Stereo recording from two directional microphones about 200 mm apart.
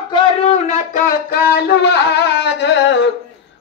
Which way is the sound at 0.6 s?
45° left (ahead or behind).